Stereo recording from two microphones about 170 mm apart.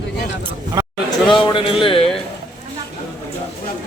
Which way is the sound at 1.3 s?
30° left (ahead or behind).